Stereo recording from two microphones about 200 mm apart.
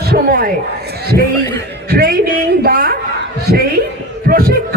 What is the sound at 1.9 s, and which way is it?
A man's voice, 50° right (ahead or behind).